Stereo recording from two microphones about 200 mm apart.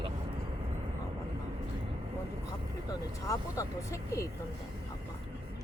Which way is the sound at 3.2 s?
15° left (ahead or behind).